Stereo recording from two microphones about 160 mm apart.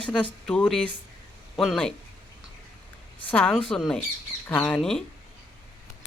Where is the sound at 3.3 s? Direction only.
5° left (ahead or behind).